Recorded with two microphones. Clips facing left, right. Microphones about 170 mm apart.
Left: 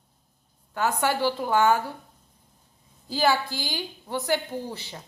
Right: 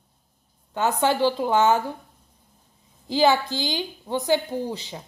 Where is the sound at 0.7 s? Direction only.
20° right (ahead or behind).